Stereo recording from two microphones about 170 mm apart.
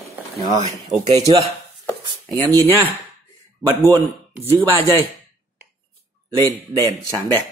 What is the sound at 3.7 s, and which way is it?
Speech, 20° right (ahead or behind).